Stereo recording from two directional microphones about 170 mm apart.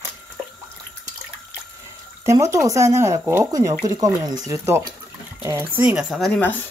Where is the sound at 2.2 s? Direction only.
15° right (ahead or behind).